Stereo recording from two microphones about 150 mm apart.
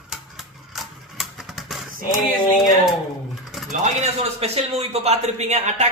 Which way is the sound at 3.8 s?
45° right (ahead or behind).